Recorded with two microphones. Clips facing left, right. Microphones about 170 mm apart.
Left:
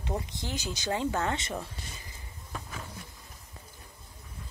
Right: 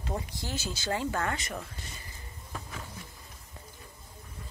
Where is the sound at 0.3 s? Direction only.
20° left (ahead or behind).